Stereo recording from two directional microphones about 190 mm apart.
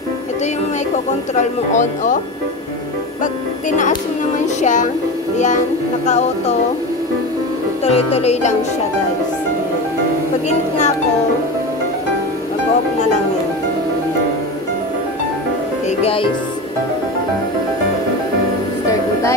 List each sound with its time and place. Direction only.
1.4 s speech: 40° left (ahead or behind)
4.6 s speech: 40° left (ahead or behind)
6.0 s speech: 35° left (ahead or behind)
7.8 s speech: 35° left (ahead or behind)
16.0 s speech: 30° left (ahead or behind)